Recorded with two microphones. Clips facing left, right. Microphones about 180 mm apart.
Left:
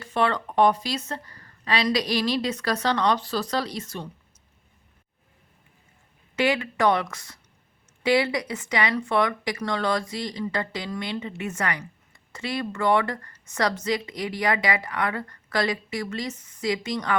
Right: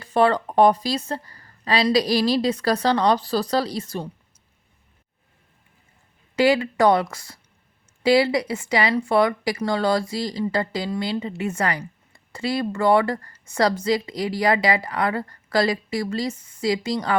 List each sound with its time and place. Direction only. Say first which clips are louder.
0.0 s speech: right 6 dB; 35° right (ahead or behind)
6.3 s speech: right 5 dB; 35° right (ahead or behind)